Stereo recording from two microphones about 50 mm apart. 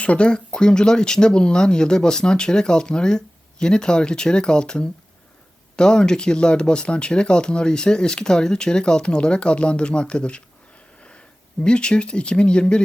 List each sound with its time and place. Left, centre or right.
0.0 s speech: left
11.6 s speech: centre